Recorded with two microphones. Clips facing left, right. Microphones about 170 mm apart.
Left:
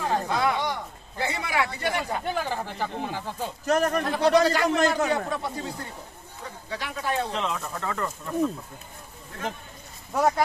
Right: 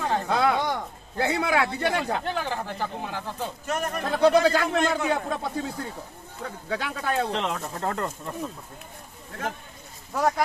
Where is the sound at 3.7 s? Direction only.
40° left (ahead or behind).